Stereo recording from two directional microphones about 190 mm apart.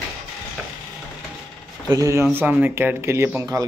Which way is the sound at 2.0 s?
15° right (ahead or behind).